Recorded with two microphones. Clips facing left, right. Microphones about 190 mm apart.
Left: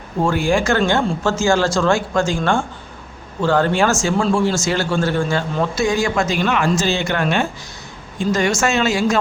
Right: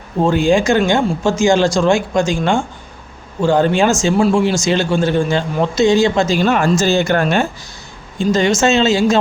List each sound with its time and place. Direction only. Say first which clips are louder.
0.2 s speech: right 4 dB; 20° right (ahead or behind); by 7.4 s 40° right (ahead or behind)
8.3 s speech: right 4 dB; 20° right (ahead or behind)